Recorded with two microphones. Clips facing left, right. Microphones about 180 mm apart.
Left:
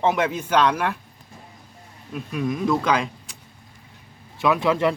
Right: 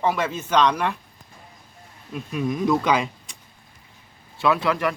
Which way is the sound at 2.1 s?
Centre (ahead or behind).